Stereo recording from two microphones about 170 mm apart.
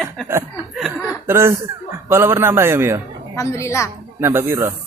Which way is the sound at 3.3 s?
15° left (ahead or behind).